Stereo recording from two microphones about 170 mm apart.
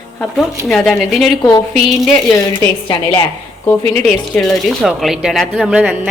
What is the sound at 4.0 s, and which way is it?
Speech, centre (ahead or behind).